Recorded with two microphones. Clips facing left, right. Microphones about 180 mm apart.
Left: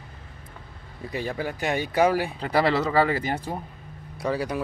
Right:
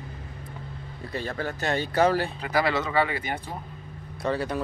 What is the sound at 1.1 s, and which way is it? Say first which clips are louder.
Speech: left 2 dB; 15° left (ahead or behind).